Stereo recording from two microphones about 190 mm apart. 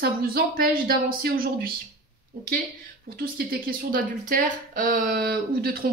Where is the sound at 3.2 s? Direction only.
50° right (ahead or behind).